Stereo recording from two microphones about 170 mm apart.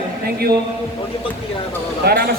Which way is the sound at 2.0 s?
65° right (ahead or behind).